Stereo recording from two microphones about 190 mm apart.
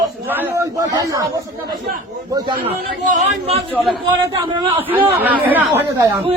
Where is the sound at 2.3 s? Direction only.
25° right (ahead or behind).